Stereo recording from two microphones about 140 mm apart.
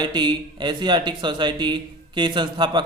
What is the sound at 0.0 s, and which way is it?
A man's voice, 30° right (ahead or behind).